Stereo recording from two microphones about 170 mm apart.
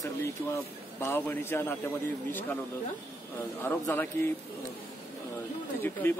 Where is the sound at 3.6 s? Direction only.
15° left (ahead or behind).